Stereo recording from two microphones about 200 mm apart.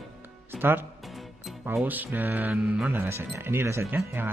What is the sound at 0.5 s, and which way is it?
Speech, 10° right (ahead or behind).